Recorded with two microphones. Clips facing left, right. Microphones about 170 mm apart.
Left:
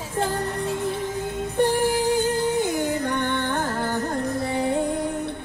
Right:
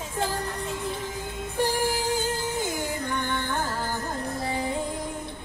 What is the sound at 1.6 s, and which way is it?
Music, 60° left (ahead or behind).